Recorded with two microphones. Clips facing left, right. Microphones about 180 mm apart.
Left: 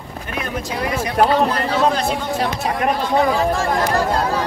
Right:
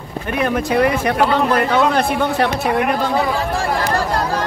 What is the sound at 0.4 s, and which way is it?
Speech, 60° right (ahead or behind).